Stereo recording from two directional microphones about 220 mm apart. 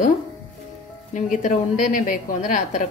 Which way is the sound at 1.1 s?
35° left (ahead or behind).